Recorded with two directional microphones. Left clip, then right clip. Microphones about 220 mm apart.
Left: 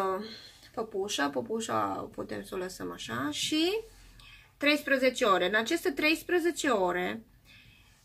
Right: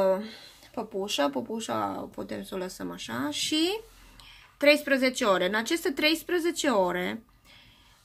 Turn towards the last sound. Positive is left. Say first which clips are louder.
# right 2 dB
turn(degrees=-40)  # may be behind; listen again after turning